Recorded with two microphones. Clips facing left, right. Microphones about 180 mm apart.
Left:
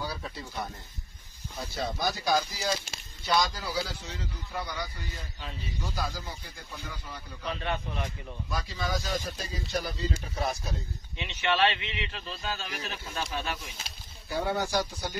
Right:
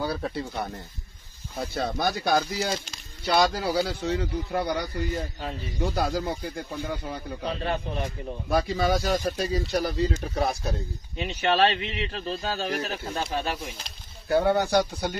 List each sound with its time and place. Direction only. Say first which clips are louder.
0.0 s speech: right 8 dB; 60° right (ahead or behind)
1.7 s speech: right 4 dB; 60° right (ahead or behind)
7.4 s speech: right 4 dB; 35° right (ahead or behind)
8.5 s speech: right 10 dB; 65° right (ahead or behind)
11.1 s speech: right 5 dB; 40° right (ahead or behind)
13.2 s speech: right 4 dB; 40° right (ahead or behind)
14.3 s speech: right 8 dB; 60° right (ahead or behind)